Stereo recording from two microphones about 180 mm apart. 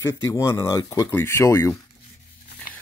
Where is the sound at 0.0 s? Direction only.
15° left (ahead or behind).